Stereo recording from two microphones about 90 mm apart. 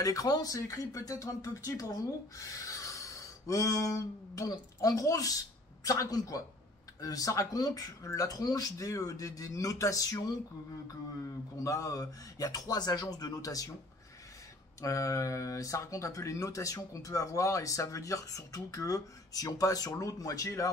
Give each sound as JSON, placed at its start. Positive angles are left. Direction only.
{"t": 0.0, "sound": "speech", "side_deg": 45}
{"t": 14.8, "sound": "speech", "side_deg": 40}